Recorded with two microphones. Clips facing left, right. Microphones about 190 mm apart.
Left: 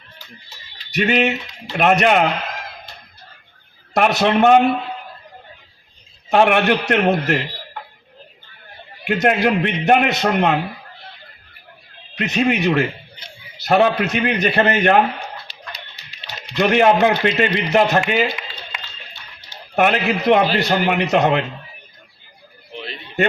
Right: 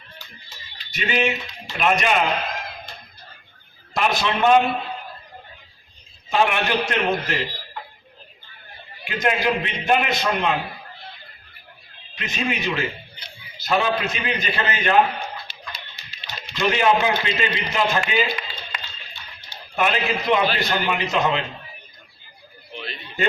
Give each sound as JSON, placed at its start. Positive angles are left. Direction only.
{"t": 0.9, "sound": "a man's voice", "side_deg": 65}
{"t": 3.9, "sound": "a man's voice", "side_deg": 65}
{"t": 6.3, "sound": "a man's voice", "side_deg": 60}
{"t": 9.0, "sound": "a man's voice", "side_deg": 65}
{"t": 12.1, "sound": "a man's voice", "side_deg": 65}
{"t": 16.6, "sound": "a man's voice", "side_deg": 60}
{"t": 19.7, "sound": "a man's voice", "side_deg": 60}